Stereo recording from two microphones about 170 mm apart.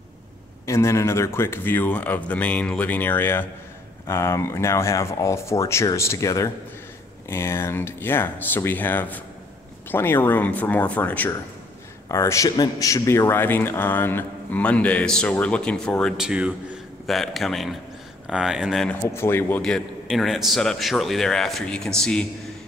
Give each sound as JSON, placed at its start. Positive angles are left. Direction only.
{"t": 0.7, "sound": "a man's voice", "side_deg": 15}
{"t": 19.1, "sound": "a man's voice", "side_deg": 15}